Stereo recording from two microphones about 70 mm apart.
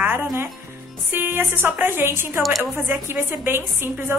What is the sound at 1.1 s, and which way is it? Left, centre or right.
A woman's voice, right.